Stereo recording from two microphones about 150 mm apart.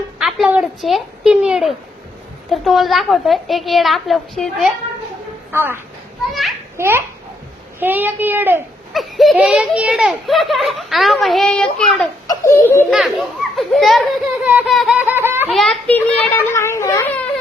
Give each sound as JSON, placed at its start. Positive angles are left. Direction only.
{"t": 0.2, "sound": "a sound", "side_deg": 0}
{"t": 2.5, "sound": "a child's voice", "side_deg": 0}
{"t": 5.5, "sound": "a child's voice", "side_deg": -15}
{"t": 8.9, "sound": "a child's voice", "side_deg": 0}
{"t": 12.3, "sound": "speech", "side_deg": 20}
{"t": 12.9, "sound": "a child's voice", "side_deg": 0}
{"t": 14.7, "sound": "laughter", "side_deg": 0}
{"t": 15.5, "sound": "a child's voice", "side_deg": 0}